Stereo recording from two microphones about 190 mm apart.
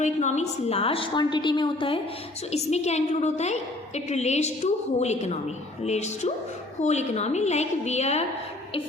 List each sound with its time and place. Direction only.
0.0 s a woman's voice: 40° left (ahead or behind)
2.5 s a woman's voice: 35° left (ahead or behind)